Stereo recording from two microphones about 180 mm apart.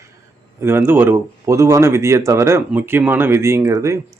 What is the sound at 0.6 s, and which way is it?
Speech, 15° right (ahead or behind).